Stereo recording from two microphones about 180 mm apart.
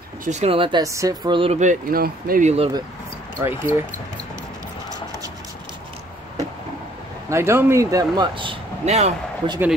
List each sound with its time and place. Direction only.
0.2 s speech: 40° right (ahead or behind)
2.5 s speech: 30° right (ahead or behind)
3.4 s speech: 15° right (ahead or behind)
7.2 s speech: 15° right (ahead or behind); by 9.6 s 30° right (ahead or behind)